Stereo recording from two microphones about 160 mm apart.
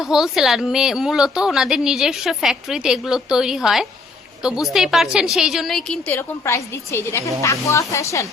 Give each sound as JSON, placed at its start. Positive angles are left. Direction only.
{"t": 0.0, "sound": "a woman's voice", "side_deg": 0}